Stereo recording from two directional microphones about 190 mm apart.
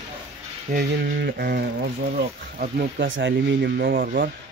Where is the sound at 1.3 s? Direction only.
55° right (ahead or behind).